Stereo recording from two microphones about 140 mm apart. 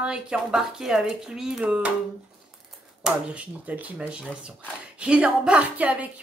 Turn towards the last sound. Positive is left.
turn(degrees=-10)  # may be behind; listen again after turning